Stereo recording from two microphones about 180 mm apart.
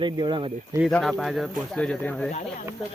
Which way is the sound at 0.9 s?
Centre (ahead or behind).